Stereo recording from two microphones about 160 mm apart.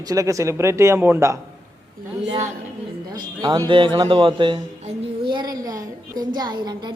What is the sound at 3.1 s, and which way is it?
A woman's voice, 25° right (ahead or behind).